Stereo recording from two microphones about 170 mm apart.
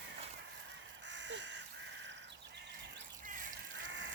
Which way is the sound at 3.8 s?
90° right.